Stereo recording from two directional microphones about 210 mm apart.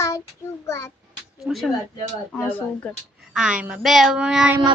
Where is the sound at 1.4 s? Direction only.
Centre (ahead or behind).